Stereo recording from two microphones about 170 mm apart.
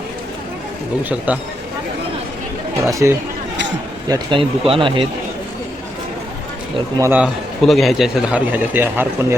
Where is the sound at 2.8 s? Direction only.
20° right (ahead or behind).